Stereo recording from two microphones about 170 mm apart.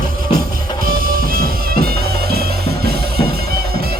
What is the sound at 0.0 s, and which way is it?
Music, 60° right (ahead or behind).